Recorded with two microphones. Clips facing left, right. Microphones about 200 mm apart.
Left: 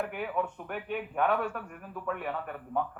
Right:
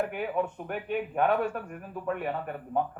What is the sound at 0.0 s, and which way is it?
A man's voice, 25° right (ahead or behind).